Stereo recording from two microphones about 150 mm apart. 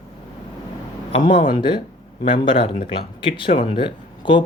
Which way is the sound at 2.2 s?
35° left (ahead or behind).